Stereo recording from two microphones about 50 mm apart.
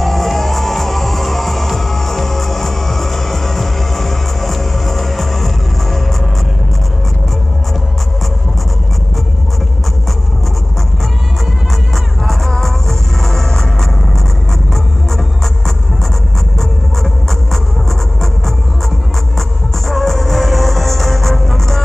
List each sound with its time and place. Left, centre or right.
0.0 s music: centre
11.9 s music: centre
16.5 s music: centre
19.9 s music: centre